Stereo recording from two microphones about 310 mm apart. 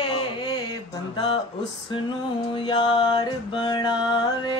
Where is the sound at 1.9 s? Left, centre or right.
Centre.